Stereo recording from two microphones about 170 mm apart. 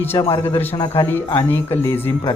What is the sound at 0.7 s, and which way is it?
Speech, 25° left (ahead or behind).